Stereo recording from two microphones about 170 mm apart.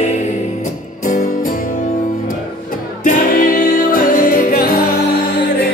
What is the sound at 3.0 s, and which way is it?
Music, 55° left (ahead or behind).